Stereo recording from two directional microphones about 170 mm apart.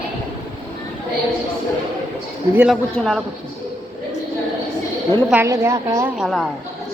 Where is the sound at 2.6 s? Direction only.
Centre (ahead or behind).